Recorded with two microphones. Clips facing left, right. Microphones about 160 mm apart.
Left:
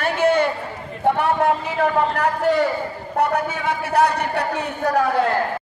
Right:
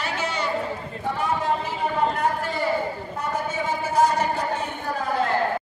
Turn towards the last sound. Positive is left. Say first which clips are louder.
# left 6 dB
turn(degrees=75)  # may be behind; listen again after turning